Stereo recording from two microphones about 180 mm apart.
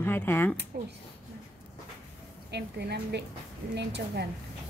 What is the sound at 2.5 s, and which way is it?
A woman's voice, 70° right (ahead or behind).